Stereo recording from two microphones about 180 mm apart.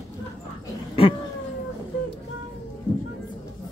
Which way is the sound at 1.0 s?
30° left (ahead or behind).